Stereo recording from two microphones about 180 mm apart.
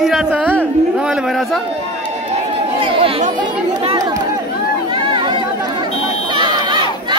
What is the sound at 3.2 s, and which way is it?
Speech, 45° right (ahead or behind).